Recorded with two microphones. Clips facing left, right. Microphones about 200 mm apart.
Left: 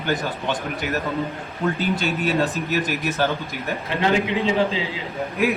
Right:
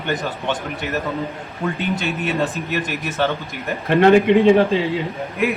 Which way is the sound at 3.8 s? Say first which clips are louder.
Right 10 dB; 60° right (ahead or behind).